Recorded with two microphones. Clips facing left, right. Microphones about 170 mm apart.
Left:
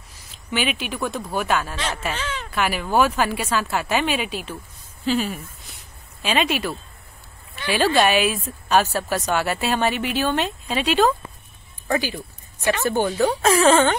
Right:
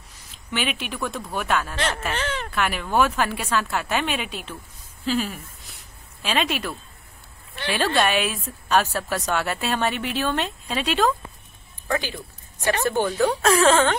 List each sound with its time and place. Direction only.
0.5 s a woman's voice: centre (ahead or behind)
1.8 s speech: 60° right (ahead or behind)
2.5 s a woman's voice: 5° left (ahead or behind)
7.7 s a woman's voice: 5° left (ahead or behind)
12.8 s a woman's voice: 5° left (ahead or behind)